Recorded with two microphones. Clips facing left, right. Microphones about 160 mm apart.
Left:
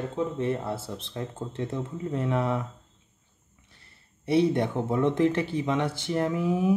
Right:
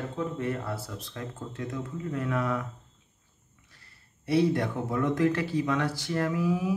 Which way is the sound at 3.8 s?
20° left (ahead or behind).